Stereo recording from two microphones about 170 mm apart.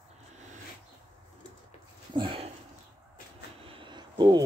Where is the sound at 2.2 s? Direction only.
35° right (ahead or behind).